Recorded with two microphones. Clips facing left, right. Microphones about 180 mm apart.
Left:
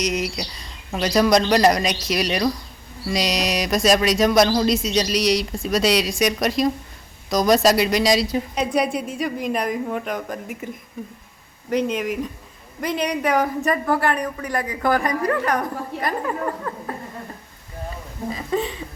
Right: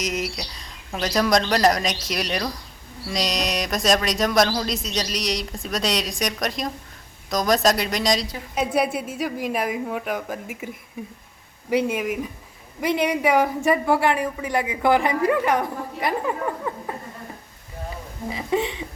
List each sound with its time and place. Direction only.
0.0 s a woman's voice: centre (ahead or behind)
11.7 s a woman's voice: 10° right (ahead or behind)
14.8 s a woman's voice: 20° right (ahead or behind)
18.3 s speech: 20° right (ahead or behind)